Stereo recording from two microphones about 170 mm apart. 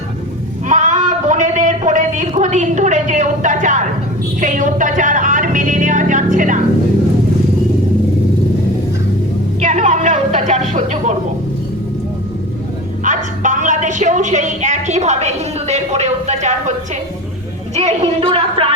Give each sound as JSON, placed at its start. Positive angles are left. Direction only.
{"t": 0.7, "sound": "a sound", "side_deg": -45}
{"t": 4.4, "sound": "music", "side_deg": -50}
{"t": 9.6, "sound": "music", "side_deg": -45}
{"t": 13.1, "sound": "a man's voice", "side_deg": -45}